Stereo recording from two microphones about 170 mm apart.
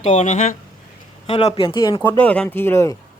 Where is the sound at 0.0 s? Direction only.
45° left (ahead or behind); by 2.0 s 25° left (ahead or behind).